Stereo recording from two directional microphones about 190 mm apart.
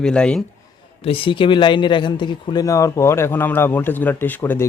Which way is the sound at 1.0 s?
30° left (ahead or behind).